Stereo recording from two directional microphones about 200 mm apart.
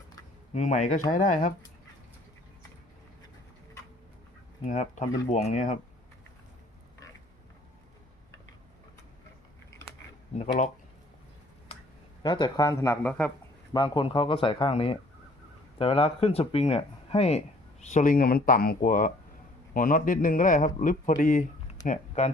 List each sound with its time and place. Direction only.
0.5 s speech: 40° left (ahead or behind)
4.6 s speech: 35° left (ahead or behind)
12.2 s speech: 20° left (ahead or behind)
13.7 s speech: 25° left (ahead or behind)
17.9 s speech: 45° left (ahead or behind)